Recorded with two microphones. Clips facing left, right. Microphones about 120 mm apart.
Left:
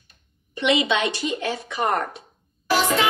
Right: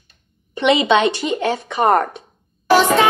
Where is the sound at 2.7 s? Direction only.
60° right (ahead or behind).